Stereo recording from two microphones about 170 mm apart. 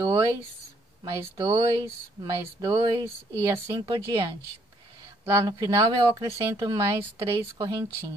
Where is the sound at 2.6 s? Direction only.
25° right (ahead or behind).